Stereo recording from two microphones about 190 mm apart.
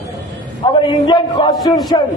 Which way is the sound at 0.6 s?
25° left (ahead or behind).